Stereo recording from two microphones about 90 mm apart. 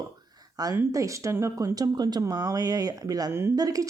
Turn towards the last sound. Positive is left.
turn(degrees=-40)  # may be behind; listen again after turning